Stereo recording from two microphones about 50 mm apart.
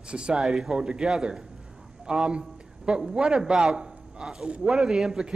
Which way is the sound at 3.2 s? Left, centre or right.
Centre.